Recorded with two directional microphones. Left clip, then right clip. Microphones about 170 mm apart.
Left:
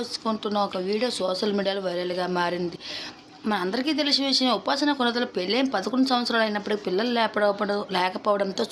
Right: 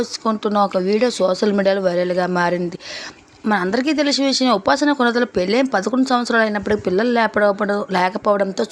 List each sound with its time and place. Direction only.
0.0 s speech: 40° right (ahead or behind)